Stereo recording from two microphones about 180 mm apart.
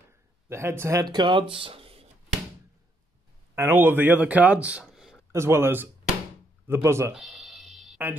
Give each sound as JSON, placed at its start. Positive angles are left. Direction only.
{"t": 0.5, "sound": "speech", "side_deg": -15}
{"t": 3.5, "sound": "speech", "side_deg": -15}
{"t": 5.3, "sound": "speech", "side_deg": -15}
{"t": 7.2, "sound": "music", "side_deg": 0}